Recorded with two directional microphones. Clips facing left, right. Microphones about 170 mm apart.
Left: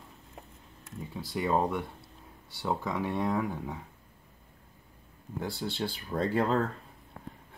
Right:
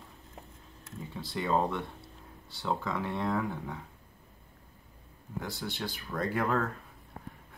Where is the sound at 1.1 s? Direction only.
15° left (ahead or behind).